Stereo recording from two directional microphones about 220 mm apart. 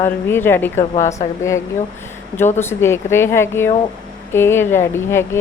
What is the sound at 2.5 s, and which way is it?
A woman's voice, 10° left (ahead or behind).